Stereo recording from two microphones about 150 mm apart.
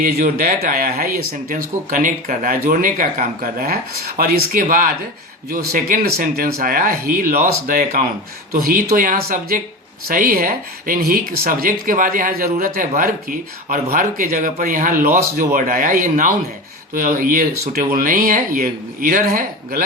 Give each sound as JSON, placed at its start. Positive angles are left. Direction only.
{"t": 0.0, "sound": "speech", "side_deg": -70}
{"t": 6.6, "sound": "speech", "side_deg": -70}